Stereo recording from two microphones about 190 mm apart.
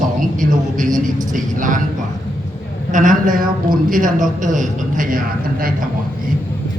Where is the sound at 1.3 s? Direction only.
45° right (ahead or behind).